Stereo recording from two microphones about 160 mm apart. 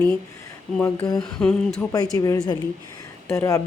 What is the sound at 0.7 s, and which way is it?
Speech, 10° left (ahead or behind).